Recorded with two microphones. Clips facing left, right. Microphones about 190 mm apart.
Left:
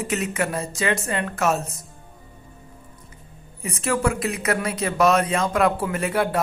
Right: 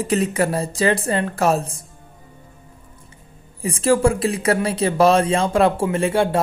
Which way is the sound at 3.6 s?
30° right (ahead or behind).